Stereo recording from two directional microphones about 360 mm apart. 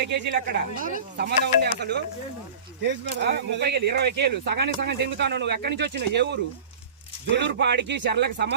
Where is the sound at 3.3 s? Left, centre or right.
Right.